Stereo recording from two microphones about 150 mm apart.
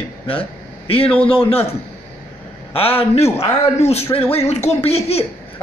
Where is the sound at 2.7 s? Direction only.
40° left (ahead or behind).